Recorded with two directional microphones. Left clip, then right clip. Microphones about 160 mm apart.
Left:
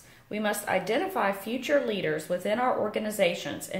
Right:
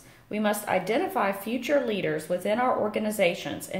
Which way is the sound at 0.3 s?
10° right (ahead or behind).